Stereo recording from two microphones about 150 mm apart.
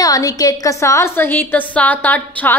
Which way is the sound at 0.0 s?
25° left (ahead or behind).